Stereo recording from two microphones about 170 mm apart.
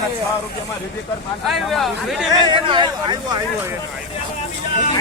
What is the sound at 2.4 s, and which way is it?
Speech, 25° right (ahead or behind).